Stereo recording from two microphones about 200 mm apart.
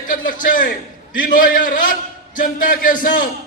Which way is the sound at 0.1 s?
40° left (ahead or behind).